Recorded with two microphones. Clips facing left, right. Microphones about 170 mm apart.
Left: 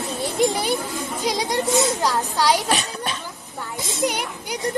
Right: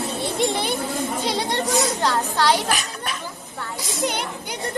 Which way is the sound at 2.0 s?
10° left (ahead or behind).